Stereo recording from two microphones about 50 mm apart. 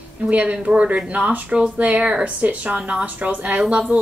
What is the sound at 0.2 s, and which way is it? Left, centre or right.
A woman's voice, right.